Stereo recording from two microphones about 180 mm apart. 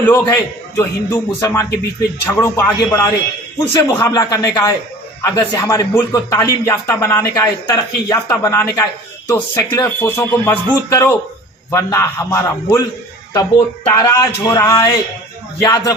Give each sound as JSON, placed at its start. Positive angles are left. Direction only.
{"t": 0.0, "sound": "a man's voice", "side_deg": 15}
{"t": 13.9, "sound": "a man's voice", "side_deg": 20}